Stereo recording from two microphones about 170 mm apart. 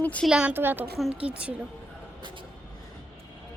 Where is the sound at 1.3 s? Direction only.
5° right (ahead or behind).